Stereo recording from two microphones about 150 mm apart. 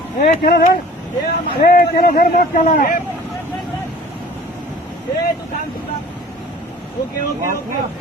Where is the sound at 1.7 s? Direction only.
75° left (ahead or behind).